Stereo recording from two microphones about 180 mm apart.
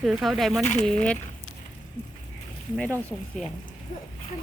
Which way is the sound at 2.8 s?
10° left (ahead or behind).